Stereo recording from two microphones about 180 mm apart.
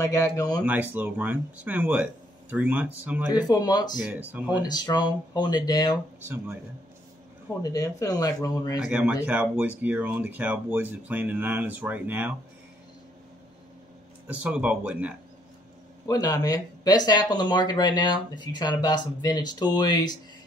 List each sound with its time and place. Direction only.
0.0 s speech: 20° left (ahead or behind)
0.7 s speech: 10° right (ahead or behind)
3.3 s speech: 20° left (ahead or behind)
4.0 s speech: 10° right (ahead or behind)
4.6 s speech: 20° left (ahead or behind)
6.2 s speech: 10° right (ahead or behind)
7.6 s speech: 20° left (ahead or behind)
8.8 s speech: 5° right (ahead or behind)
14.2 s speech: 5° right (ahead or behind)
16.1 s speech: 20° left (ahead or behind)